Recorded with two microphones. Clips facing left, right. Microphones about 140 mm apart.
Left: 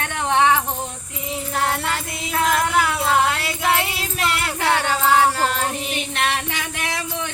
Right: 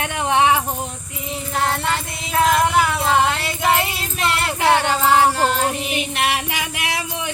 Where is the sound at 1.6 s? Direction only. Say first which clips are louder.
Right 3 dB; 5° left (ahead or behind).